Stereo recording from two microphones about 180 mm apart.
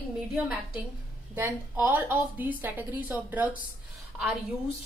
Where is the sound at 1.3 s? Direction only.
10° right (ahead or behind).